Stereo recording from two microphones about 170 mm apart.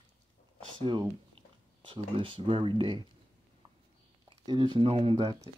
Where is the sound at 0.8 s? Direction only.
30° right (ahead or behind).